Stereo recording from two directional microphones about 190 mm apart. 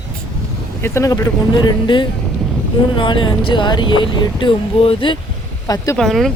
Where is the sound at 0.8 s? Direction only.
15° left (ahead or behind).